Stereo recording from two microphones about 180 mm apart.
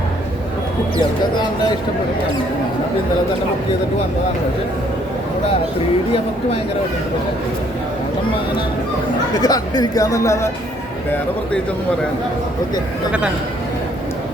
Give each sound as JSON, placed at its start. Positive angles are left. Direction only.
{"t": 9.3, "sound": "speech", "side_deg": 20}
{"t": 13.1, "sound": "speech", "side_deg": -5}